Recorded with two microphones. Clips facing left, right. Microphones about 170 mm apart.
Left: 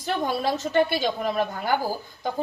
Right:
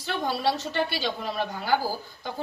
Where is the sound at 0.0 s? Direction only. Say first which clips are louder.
Left 2 dB; 50° left (ahead or behind).